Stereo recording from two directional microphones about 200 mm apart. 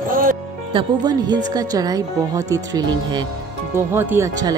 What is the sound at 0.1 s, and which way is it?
Music, 45° right (ahead or behind).